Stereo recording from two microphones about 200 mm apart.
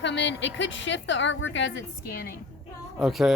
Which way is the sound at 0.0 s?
60° left (ahead or behind).